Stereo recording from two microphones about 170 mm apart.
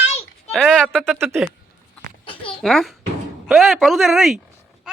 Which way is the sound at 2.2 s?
30° left (ahead or behind).